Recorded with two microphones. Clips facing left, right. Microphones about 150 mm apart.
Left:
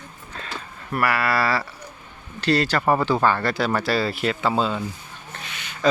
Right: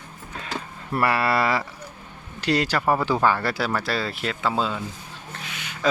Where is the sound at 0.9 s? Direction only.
25° right (ahead or behind); by 4.8 s centre (ahead or behind).